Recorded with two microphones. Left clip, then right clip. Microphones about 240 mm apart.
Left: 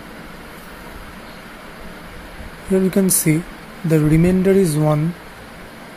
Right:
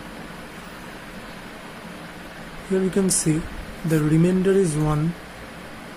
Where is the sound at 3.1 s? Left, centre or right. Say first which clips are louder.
Left 4 dB; centre.